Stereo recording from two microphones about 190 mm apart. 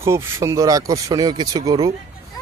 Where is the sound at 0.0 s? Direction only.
15° right (ahead or behind).